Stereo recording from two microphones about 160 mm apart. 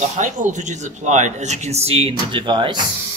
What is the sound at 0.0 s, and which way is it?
Speech, 50° right (ahead or behind).